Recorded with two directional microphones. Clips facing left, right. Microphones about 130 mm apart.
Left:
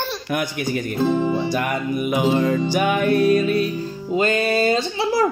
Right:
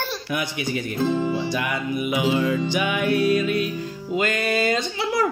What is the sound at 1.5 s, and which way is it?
Music, 45° left (ahead or behind).